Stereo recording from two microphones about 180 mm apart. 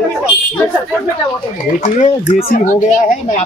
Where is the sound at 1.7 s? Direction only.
45° left (ahead or behind).